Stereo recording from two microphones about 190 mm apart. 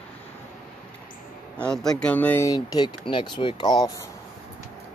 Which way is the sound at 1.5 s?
5° left (ahead or behind).